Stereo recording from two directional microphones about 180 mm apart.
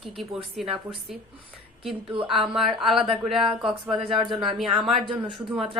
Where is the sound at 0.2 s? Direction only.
Centre (ahead or behind).